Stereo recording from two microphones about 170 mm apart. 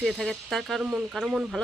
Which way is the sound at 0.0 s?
Centre (ahead or behind).